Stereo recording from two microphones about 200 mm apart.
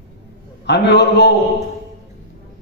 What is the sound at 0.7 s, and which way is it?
Speech, 60° left (ahead or behind).